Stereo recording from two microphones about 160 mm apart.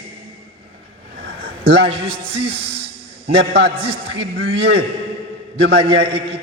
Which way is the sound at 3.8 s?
35° right (ahead or behind).